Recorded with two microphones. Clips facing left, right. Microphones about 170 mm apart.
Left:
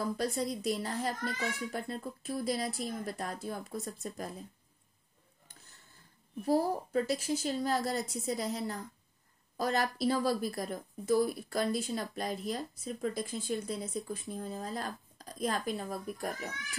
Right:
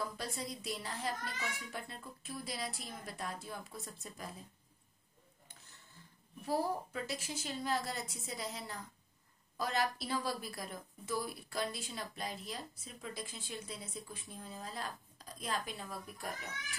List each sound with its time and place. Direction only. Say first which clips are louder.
0.0 s speech: left 8 dB; 45° left (ahead or behind)
6.4 s speech: left 6 dB; 40° left (ahead or behind)